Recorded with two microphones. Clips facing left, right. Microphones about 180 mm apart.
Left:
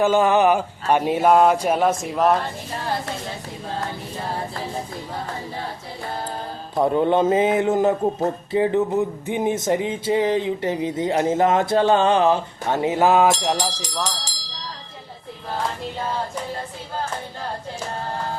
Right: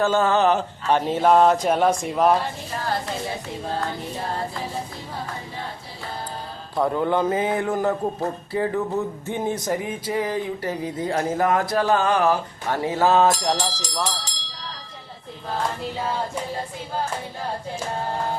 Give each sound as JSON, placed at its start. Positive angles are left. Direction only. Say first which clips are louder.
{"t": 0.0, "sound": "a sound", "louder": "left 2 dB", "side_deg": 15}
{"t": 6.7, "sound": "speech", "louder": "left 3 dB", "side_deg": 20}
{"t": 13.7, "sound": "speech", "louder": "even", "side_deg": -5}